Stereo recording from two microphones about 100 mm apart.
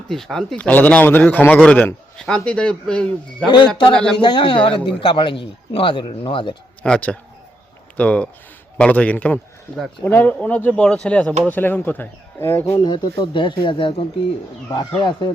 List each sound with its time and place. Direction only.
0.1 s a man's voice: 5° left (ahead or behind)
4.2 s a man's voice: 50° left (ahead or behind)
6.8 s a man's voice: 10° left (ahead or behind)
12.8 s speech: 50° left (ahead or behind)